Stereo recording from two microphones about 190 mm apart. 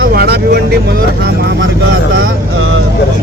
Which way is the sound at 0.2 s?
60° right (ahead or behind).